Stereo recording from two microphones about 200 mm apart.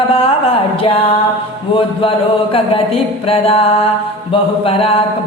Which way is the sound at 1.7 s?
25° left (ahead or behind).